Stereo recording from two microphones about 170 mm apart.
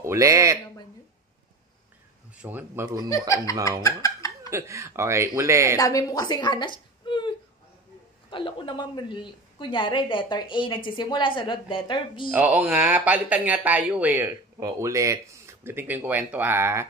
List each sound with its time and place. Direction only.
0.0 s speech: 15° right (ahead or behind)
2.4 s speech: 10° right (ahead or behind)
3.1 s a woman's voice: 20° left (ahead or behind)
4.5 s speech: 15° right (ahead or behind)
5.8 s a woman's voice: 20° left (ahead or behind)
12.3 s speech: 10° right (ahead or behind)